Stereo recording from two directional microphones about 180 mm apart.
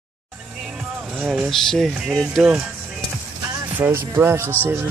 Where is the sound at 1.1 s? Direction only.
5° right (ahead or behind).